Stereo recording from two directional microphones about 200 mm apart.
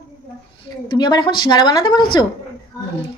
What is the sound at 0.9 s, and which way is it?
A woman's voice, 20° left (ahead or behind).